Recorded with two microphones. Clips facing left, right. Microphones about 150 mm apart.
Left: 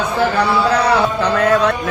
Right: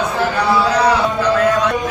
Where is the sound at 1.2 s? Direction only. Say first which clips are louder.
Even; 60° left (ahead or behind).